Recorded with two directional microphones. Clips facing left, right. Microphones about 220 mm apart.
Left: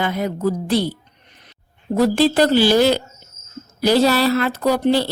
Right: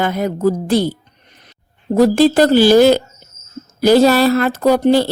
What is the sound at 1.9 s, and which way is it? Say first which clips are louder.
Speech: right 4 dB; 45° right (ahead or behind).